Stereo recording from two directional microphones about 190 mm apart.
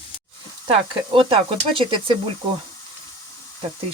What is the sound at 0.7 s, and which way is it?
Stir, 30° right (ahead or behind).